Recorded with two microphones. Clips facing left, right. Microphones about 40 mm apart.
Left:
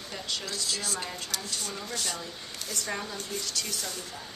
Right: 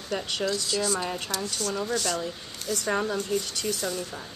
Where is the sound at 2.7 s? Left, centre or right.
Centre.